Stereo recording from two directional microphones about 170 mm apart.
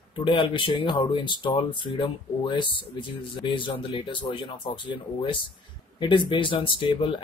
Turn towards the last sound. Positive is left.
turn(degrees=30)  # may be behind; listen again after turning